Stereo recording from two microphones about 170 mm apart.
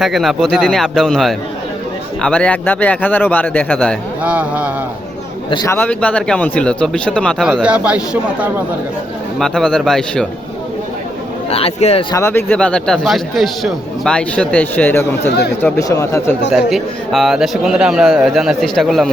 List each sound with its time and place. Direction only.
0.0 s a man's voice: centre (ahead or behind)
4.2 s speech: 10° right (ahead or behind)
5.5 s a man's voice: 25° left (ahead or behind)
5.7 s a man's voice: 10° left (ahead or behind)
7.4 s speech: 5° right (ahead or behind)
9.4 s a man's voice: 5° left (ahead or behind)
11.5 s speech: 35° left (ahead or behind)
12.1 s a man's voice: 15° left (ahead or behind)
16.5 s a man's voice: centre (ahead or behind)